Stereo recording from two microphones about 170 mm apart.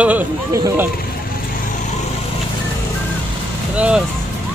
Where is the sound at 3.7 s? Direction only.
5° right (ahead or behind).